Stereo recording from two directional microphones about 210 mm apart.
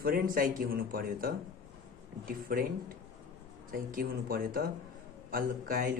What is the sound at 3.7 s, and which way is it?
A man's voice, 45° right (ahead or behind).